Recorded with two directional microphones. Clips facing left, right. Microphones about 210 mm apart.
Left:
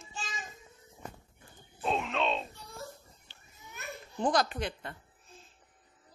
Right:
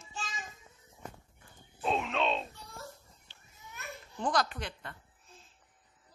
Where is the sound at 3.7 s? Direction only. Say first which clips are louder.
Left 4 dB; 15° left (ahead or behind).